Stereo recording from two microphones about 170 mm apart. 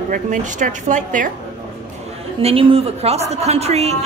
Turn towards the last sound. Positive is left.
turn(degrees=-40)  # may be behind; listen again after turning